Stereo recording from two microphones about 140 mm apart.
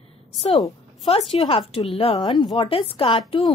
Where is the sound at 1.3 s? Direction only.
45° left (ahead or behind).